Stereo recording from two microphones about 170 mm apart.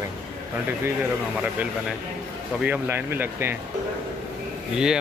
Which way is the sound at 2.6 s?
10° right (ahead or behind).